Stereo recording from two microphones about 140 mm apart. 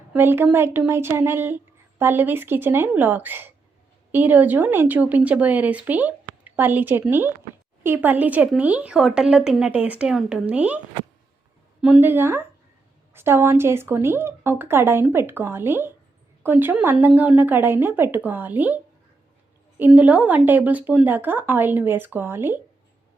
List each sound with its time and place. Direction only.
0.1 s speech: 15° right (ahead or behind)
11.8 s speech: 10° right (ahead or behind)
19.8 s speech: 10° right (ahead or behind)